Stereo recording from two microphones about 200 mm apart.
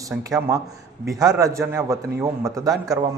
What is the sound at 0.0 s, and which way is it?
Speech, 15° right (ahead or behind).